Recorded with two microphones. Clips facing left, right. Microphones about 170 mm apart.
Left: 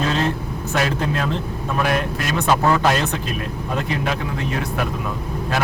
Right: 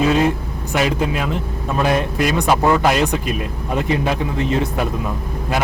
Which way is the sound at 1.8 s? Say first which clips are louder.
Right 5 dB; 20° right (ahead or behind).